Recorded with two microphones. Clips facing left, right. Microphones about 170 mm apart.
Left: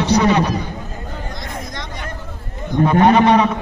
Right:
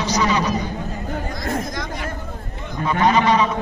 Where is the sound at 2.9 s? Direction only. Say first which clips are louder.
Left 4 dB; 60° left (ahead or behind).